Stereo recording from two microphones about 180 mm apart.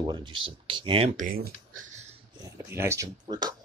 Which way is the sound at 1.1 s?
50° right (ahead or behind).